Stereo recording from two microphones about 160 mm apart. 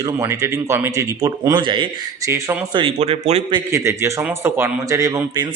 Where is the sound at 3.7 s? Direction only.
15° right (ahead or behind).